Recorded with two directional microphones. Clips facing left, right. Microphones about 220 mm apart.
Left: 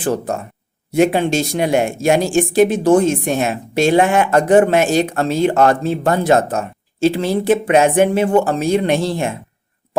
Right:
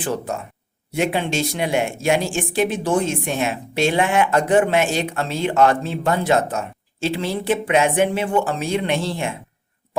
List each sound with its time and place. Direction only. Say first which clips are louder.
0.0 s speech: left 5 dB; 45° left (ahead or behind)